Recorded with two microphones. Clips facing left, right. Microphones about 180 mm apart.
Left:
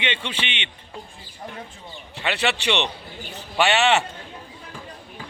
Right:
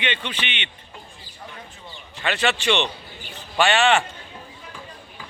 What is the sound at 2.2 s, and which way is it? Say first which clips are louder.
Speech: right 1 dB; 20° left (ahead or behind).